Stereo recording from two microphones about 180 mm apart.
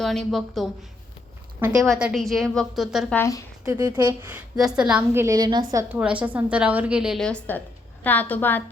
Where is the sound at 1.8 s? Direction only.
5° right (ahead or behind).